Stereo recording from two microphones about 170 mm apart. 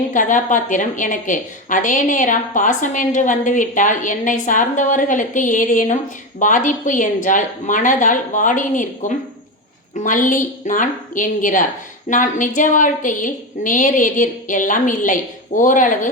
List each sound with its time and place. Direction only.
0.1 s a woman's voice: 50° left (ahead or behind)